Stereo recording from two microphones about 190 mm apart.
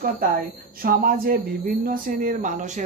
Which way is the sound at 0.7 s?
50° right (ahead or behind).